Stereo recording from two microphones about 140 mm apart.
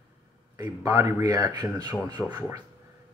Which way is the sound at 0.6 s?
25° right (ahead or behind).